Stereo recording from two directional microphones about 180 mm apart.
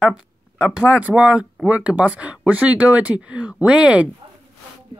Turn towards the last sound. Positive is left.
turn(degrees=-5)  # may be behind; listen again after turning